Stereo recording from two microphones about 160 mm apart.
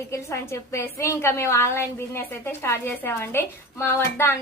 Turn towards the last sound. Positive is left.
turn(degrees=15)  # may be behind; listen again after turning